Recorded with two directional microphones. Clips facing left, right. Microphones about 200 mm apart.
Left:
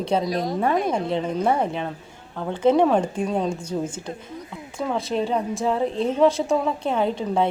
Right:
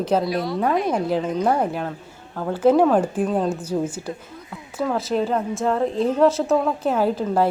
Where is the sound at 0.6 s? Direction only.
Centre (ahead or behind).